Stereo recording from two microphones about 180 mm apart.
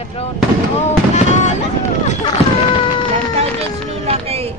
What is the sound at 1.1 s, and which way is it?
Fireworks, 40° left (ahead or behind).